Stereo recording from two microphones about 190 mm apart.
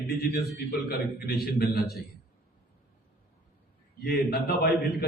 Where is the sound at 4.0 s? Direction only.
55° left (ahead or behind).